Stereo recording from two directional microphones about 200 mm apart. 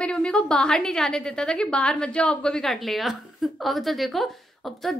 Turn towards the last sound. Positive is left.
turn(degrees=0)  # may be behind; listen again after turning